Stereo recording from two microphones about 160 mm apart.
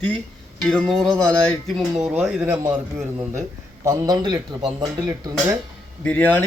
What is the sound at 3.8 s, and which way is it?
Speech, 20° right (ahead or behind).